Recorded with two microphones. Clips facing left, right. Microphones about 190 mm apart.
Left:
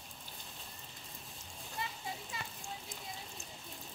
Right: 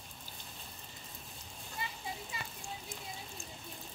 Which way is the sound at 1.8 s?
5° right (ahead or behind).